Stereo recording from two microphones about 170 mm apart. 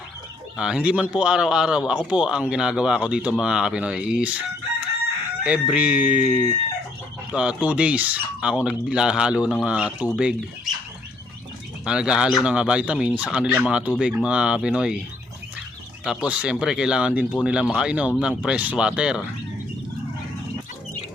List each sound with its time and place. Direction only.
0.5 s speech: 5° right (ahead or behind)
5.4 s speech: 5° right (ahead or behind)
11.9 s speech: 5° right (ahead or behind)
16.0 s speech: 5° right (ahead or behind)